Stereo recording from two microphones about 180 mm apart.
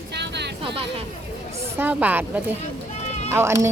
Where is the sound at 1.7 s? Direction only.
10° right (ahead or behind).